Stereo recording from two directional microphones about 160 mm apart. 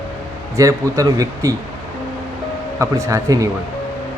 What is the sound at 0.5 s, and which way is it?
A man's voice, 20° right (ahead or behind).